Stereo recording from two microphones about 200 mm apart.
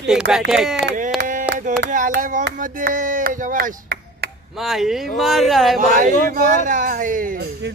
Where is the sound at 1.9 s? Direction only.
40° right (ahead or behind).